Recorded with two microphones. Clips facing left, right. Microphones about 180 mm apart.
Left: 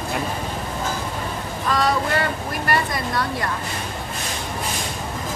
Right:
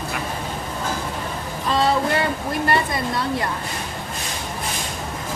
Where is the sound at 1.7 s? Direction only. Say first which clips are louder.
Right 1 dB; 25° right (ahead or behind).